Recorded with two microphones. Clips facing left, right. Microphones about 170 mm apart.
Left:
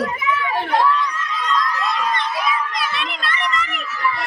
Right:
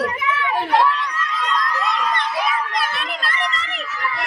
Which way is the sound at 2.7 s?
50° right (ahead or behind).